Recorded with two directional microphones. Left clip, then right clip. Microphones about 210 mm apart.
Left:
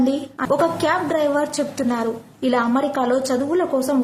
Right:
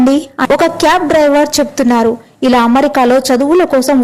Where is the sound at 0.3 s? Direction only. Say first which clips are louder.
Right 6 dB; 40° right (ahead or behind).